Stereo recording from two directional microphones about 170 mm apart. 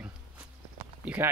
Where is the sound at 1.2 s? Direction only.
15° right (ahead or behind).